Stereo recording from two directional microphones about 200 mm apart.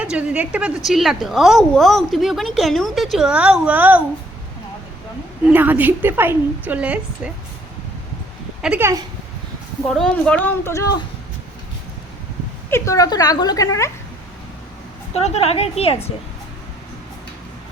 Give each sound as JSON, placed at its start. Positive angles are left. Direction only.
{"t": 0.0, "sound": "a woman's voice", "side_deg": -5}
{"t": 5.5, "sound": "a woman's voice", "side_deg": -10}
{"t": 8.6, "sound": "a woman's voice", "side_deg": -10}
{"t": 9.8, "sound": "speech", "side_deg": 0}
{"t": 12.7, "sound": "speech", "side_deg": 15}
{"t": 15.1, "sound": "a woman's voice", "side_deg": 30}